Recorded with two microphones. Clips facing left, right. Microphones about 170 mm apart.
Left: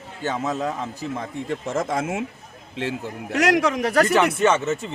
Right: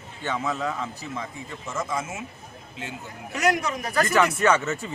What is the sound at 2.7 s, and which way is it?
Speech, 90° left.